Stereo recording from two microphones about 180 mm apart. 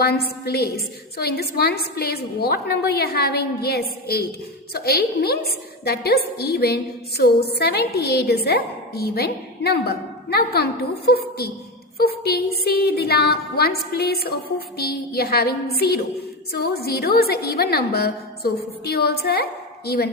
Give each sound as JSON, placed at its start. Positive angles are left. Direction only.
{"t": 0.0, "sound": "a woman's voice", "side_deg": 60}